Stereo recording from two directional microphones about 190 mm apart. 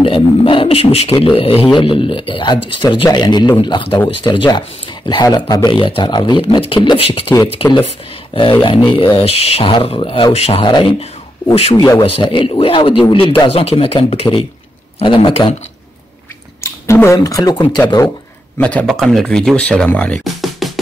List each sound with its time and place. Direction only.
0.0 s a sound: 30° left (ahead or behind)
1.8 s speech: 25° left (ahead or behind)
8.6 s speech: 25° left (ahead or behind)
11.7 s speech: 20° left (ahead or behind)
16.6 s speech: 15° left (ahead or behind)
18.6 s speech: 5° left (ahead or behind)